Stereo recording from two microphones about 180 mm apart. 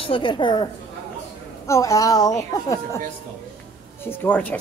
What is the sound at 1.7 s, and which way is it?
A woman's voice, 15° left (ahead or behind).